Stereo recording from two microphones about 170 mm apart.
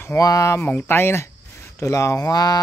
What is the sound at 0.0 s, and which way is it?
Speech, 20° left (ahead or behind).